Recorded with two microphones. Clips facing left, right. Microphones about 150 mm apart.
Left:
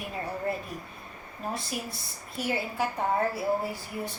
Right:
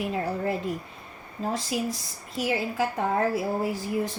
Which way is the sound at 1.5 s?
90° right.